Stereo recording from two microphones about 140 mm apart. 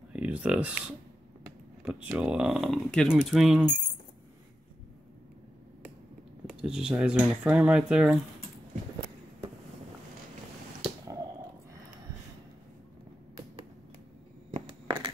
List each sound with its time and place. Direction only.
0.1 s speech: 10° right (ahead or behind)
2.0 s speech: 5° right (ahead or behind)
6.5 s speech: 5° right (ahead or behind)
14.5 s a sound: 35° right (ahead or behind)